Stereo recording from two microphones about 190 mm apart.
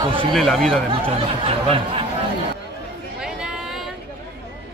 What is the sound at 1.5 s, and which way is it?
Speech, 30° right (ahead or behind).